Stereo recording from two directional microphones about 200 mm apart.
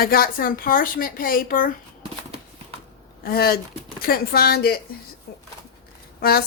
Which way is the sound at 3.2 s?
50° left (ahead or behind).